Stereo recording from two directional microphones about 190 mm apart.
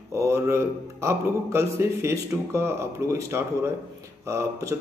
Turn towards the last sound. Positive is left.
turn(degrees=-15)  # may be behind; listen again after turning